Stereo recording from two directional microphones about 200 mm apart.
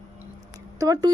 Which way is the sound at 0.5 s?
20° right (ahead or behind).